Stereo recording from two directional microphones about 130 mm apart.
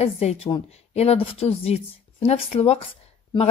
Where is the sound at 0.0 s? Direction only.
50° left (ahead or behind).